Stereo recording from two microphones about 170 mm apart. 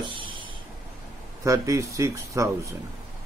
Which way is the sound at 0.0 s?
30° right (ahead or behind).